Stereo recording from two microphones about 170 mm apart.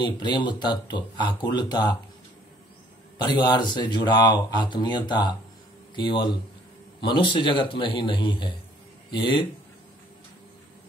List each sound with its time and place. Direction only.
0.0 s speech: 25° left (ahead or behind)
3.2 s speech: 25° left (ahead or behind)